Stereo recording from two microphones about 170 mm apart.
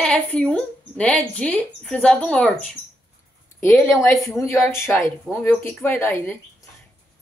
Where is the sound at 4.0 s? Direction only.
15° left (ahead or behind).